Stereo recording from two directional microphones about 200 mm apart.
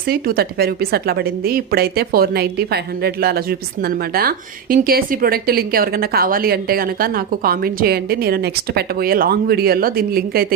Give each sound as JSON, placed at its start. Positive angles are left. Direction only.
{"t": 0.0, "sound": "a woman's voice", "side_deg": -50}